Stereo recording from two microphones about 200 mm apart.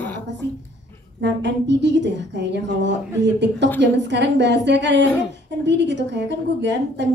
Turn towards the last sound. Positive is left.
turn(degrees=-60)  # may be behind; listen again after turning